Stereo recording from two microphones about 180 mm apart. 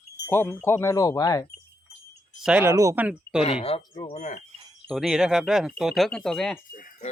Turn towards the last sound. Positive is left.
turn(degrees=50)  # may be behind; listen again after turning